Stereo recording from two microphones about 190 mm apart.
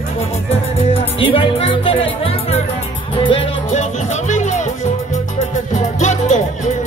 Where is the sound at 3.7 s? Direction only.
40° left (ahead or behind).